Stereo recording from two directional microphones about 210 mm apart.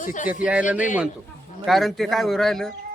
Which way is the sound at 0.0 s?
40° left (ahead or behind).